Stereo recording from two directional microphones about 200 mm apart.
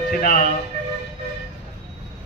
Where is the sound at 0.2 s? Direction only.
45° left (ahead or behind).